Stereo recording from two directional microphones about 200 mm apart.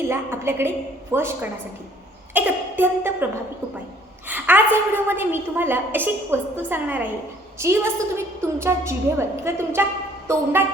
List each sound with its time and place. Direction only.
0.1 s a woman's voice: 10° right (ahead or behind)
4.3 s a woman's voice: 10° right (ahead or behind)